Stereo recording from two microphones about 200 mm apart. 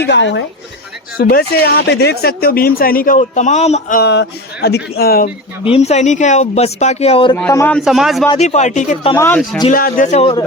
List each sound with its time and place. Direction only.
0.1 s a woman's voice: 65° left (ahead or behind)
1.1 s speech: 50° left (ahead or behind)
4.0 s speech: 55° left (ahead or behind)
5.6 s speech: 30° left (ahead or behind)
7.5 s speech: 10° left (ahead or behind)
7.8 s speech: centre (ahead or behind)
8.3 s speech: 35° left (ahead or behind)
9.1 s speech: 10° left (ahead or behind)
9.7 s speech: 40° left (ahead or behind)